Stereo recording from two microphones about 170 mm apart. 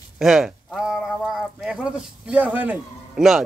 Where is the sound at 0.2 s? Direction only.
5° right (ahead or behind).